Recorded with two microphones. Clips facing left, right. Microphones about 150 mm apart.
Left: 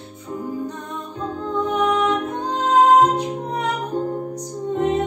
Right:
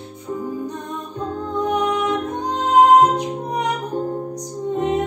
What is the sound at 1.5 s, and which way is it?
Music, 15° right (ahead or behind).